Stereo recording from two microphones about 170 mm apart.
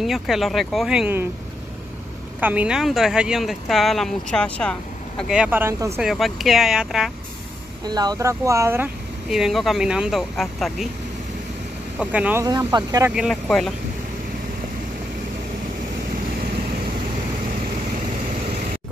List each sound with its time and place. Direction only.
0.0 s speech: centre (ahead or behind)
2.4 s speech: 10° right (ahead or behind)
5.3 s speech: 10° right (ahead or behind)
6.0 s speech: centre (ahead or behind)
7.8 s speech: 25° right (ahead or behind); by 10.9 s centre (ahead or behind)
12.0 s speech: 10° right (ahead or behind)
12.4 s speech: 25° right (ahead or behind)
13.1 s speech: centre (ahead or behind)